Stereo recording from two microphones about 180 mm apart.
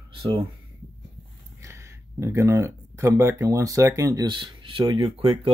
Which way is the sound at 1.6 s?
15° right (ahead or behind).